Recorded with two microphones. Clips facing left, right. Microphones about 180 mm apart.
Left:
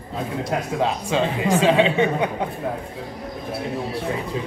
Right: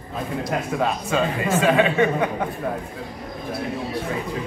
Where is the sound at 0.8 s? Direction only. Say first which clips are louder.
Left 1 dB; 20° left (ahead or behind).